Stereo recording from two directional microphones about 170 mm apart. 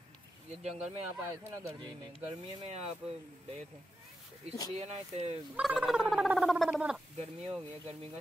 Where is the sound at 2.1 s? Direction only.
40° right (ahead or behind).